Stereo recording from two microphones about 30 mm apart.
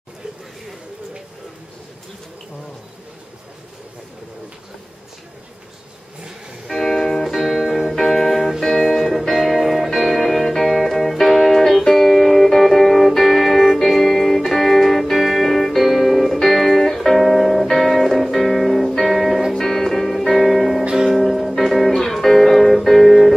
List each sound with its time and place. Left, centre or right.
6.7 s music: centre
7.2 s music: centre
7.9 s music: centre
8.4 s music: centre
8.6 s music: centre
10.0 s music: centre